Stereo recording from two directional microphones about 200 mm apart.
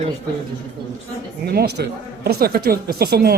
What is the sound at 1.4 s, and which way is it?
A woman's voice, 55° right (ahead or behind).